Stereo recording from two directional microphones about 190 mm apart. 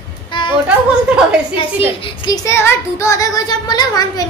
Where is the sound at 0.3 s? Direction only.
25° left (ahead or behind).